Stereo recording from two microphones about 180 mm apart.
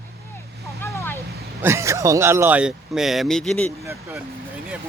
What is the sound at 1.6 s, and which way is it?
Speech, 15° right (ahead or behind).